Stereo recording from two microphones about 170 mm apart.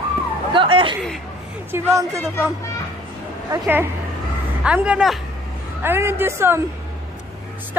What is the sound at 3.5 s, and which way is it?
A woman's voice, 10° right (ahead or behind).